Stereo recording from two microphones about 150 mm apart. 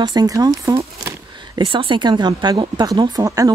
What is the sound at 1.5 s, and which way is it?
Speech, 35° right (ahead or behind).